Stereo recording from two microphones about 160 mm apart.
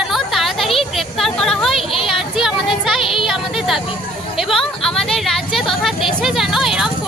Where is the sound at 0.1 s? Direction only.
Centre (ahead or behind).